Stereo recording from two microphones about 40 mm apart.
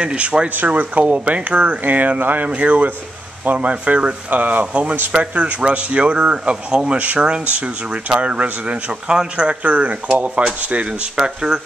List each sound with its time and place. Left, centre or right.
0.0 s speech: right
0.7 s speech: right
2.0 s speech: right
2.4 s speech: right
9.0 s speech: centre
9.5 s speech: right
11.1 s speech: centre